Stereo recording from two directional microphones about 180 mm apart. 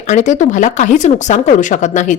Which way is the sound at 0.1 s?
40° left (ahead or behind).